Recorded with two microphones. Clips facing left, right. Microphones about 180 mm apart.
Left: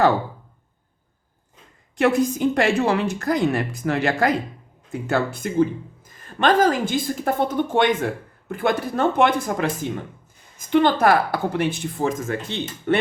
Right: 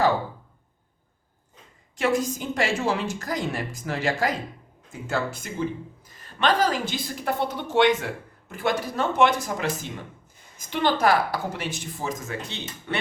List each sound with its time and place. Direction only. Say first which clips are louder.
2.0 s a woman's voice: left 6 dB; 60° left (ahead or behind)
10.7 s a woman's voice: left 5 dB; 55° left (ahead or behind)